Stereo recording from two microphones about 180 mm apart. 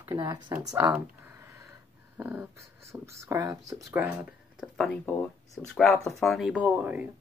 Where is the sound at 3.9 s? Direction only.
10° right (ahead or behind).